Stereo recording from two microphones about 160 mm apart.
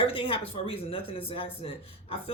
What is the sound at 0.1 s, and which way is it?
Speech, 35° left (ahead or behind).